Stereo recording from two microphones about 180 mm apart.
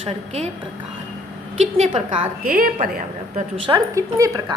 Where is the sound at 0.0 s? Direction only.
35° right (ahead or behind).